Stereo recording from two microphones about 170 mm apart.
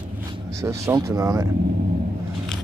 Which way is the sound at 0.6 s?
15° right (ahead or behind).